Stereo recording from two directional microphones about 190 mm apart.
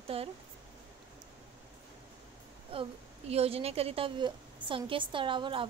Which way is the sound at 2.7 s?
30° right (ahead or behind).